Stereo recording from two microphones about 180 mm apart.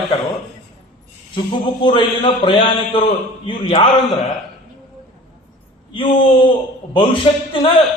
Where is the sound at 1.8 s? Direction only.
25° left (ahead or behind).